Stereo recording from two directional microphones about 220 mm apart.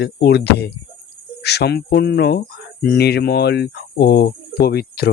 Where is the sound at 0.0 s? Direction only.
50° left (ahead or behind).